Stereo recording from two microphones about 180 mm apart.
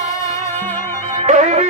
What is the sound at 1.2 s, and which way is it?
Music, 40° right (ahead or behind).